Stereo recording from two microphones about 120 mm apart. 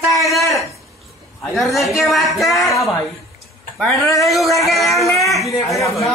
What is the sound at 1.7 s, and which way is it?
Speech, centre (ahead or behind).